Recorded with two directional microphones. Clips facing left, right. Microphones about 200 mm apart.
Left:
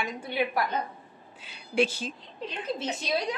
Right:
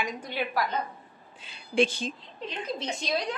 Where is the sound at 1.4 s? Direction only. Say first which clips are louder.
Right 1 dB; 5° left (ahead or behind).